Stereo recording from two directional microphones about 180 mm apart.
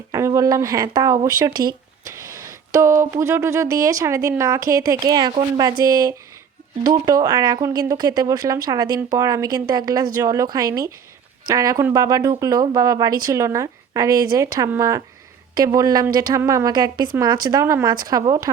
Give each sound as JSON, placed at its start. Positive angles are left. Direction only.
{"t": 0.1, "sound": "speech", "side_deg": -15}